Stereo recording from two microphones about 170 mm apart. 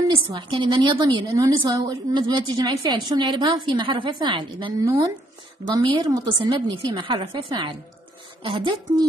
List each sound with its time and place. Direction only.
0.1 s a woman's voice: 30° right (ahead or behind)